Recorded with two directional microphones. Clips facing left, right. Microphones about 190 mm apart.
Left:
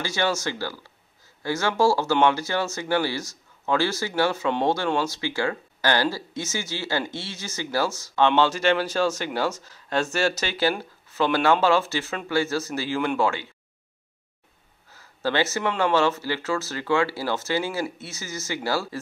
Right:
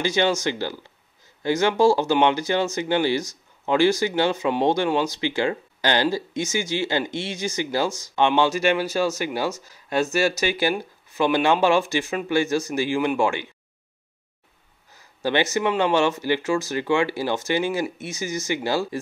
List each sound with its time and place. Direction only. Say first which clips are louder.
0.0 s speech: right 4 dB; 20° right (ahead or behind)
15.0 s speech: right 2 dB; 15° right (ahead or behind)